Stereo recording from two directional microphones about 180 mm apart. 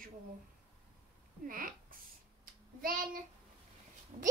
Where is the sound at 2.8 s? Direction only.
50° right (ahead or behind).